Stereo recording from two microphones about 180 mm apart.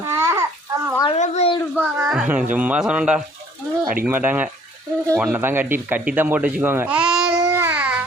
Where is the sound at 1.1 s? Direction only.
35° left (ahead or behind).